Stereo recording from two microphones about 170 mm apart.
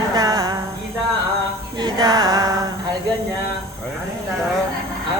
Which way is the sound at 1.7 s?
25° right (ahead or behind).